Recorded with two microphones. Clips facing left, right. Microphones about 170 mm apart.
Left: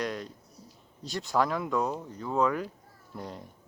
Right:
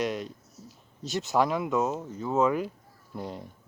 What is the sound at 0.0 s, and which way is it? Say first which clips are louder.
Speech: right 3 dB; 20° right (ahead or behind).